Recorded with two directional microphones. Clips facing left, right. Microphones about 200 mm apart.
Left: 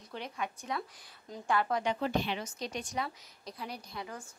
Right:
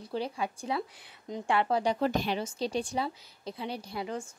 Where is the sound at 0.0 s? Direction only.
30° right (ahead or behind).